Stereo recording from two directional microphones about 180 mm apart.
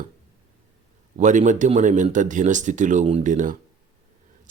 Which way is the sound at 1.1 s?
45° right (ahead or behind).